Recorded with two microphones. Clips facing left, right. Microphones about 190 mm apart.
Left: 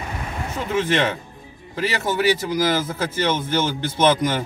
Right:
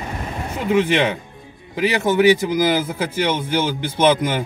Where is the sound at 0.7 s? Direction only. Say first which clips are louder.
Right 4 dB; 15° right (ahead or behind).